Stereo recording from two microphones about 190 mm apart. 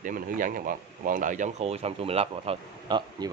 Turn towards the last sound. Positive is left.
turn(degrees=-25)  # may be behind; listen again after turning